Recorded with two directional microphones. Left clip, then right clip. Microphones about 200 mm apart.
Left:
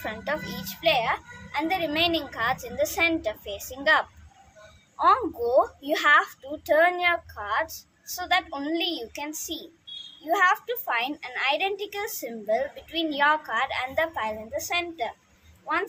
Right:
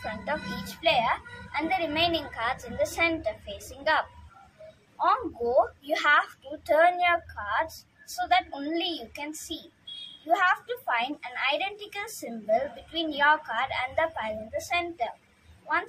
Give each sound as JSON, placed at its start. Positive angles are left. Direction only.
{"t": 0.0, "sound": "a woman's voice", "side_deg": 40}